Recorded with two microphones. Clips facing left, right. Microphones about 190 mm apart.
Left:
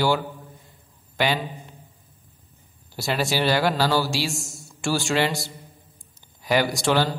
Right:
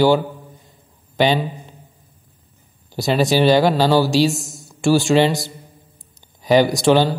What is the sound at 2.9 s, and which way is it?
A man's voice, 20° right (ahead or behind).